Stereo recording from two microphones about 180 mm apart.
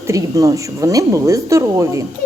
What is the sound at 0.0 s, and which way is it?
A woman's voice, 15° right (ahead or behind).